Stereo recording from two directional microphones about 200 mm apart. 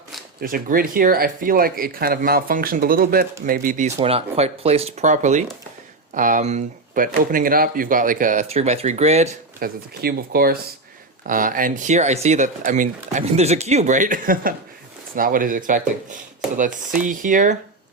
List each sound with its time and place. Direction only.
0.3 s speech: 45° right (ahead or behind)
9.6 s speech: 50° right (ahead or behind)